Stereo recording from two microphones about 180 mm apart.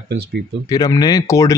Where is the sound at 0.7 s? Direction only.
20° left (ahead or behind).